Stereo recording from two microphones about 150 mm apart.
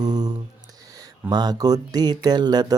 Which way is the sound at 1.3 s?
25° right (ahead or behind).